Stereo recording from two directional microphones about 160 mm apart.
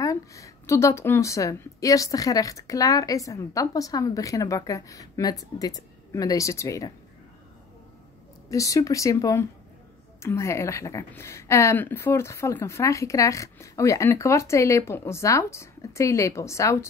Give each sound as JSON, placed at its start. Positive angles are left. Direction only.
{"t": 0.0, "sound": "a woman's voice", "side_deg": 20}
{"t": 8.5, "sound": "a woman's voice", "side_deg": 20}